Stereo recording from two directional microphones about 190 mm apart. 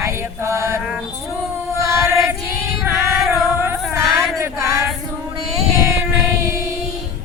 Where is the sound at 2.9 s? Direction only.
Centre (ahead or behind).